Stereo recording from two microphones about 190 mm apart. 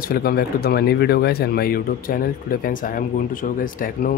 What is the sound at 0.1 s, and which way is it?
Speech, 55° left (ahead or behind).